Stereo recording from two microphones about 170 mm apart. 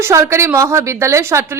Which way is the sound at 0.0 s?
15° right (ahead or behind).